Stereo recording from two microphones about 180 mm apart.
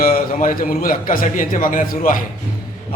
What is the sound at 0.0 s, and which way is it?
A man's voice, 50° left (ahead or behind).